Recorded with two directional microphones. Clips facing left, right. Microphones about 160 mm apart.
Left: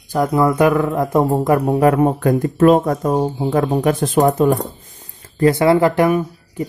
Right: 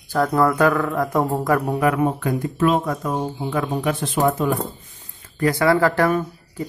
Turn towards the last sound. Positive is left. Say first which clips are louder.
# left 4 dB
turn(degrees=15)  # may be behind; listen again after turning